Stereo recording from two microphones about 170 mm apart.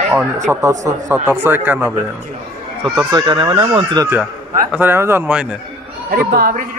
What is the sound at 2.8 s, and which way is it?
Speech, 25° right (ahead or behind).